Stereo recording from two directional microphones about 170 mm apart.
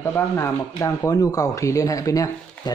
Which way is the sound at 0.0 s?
15° left (ahead or behind).